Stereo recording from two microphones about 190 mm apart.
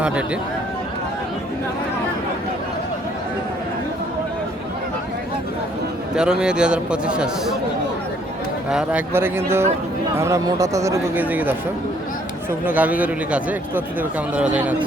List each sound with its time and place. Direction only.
6.1 s a man's voice: 5° right (ahead or behind)
8.7 s speech: 5° right (ahead or behind)